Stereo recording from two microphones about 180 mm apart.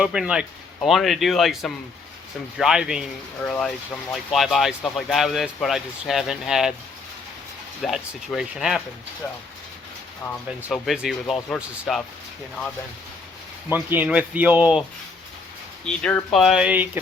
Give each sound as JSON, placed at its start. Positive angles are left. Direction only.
{"t": 0.0, "sound": "speech", "side_deg": -5}
{"t": 7.8, "sound": "speech", "side_deg": 0}
{"t": 10.7, "sound": "speech", "side_deg": 0}
{"t": 13.7, "sound": "speech", "side_deg": -10}
{"t": 15.9, "sound": "speech", "side_deg": 5}